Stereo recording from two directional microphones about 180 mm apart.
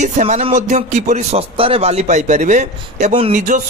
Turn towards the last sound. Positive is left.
turn(degrees=-45)  # may be behind; listen again after turning